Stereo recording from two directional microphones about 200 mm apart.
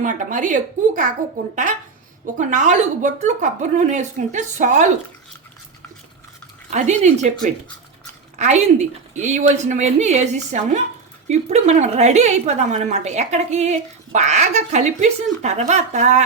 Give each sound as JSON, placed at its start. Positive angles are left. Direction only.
{"t": 0.0, "sound": "a woman's voice", "side_deg": -40}
{"t": 2.2, "sound": "a woman's voice", "side_deg": -40}
{"t": 6.7, "sound": "a woman's voice", "side_deg": -35}
{"t": 8.4, "sound": "a woman's voice", "side_deg": -35}